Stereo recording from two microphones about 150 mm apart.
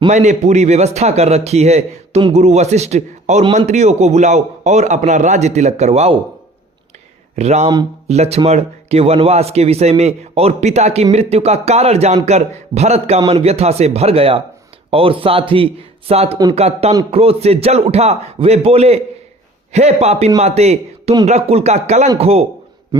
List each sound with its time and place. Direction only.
0.1 s speech: 50° right (ahead or behind)
7.3 s a man's voice: 45° right (ahead or behind)